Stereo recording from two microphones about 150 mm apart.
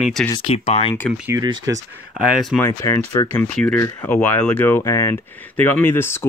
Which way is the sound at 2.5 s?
15° left (ahead or behind).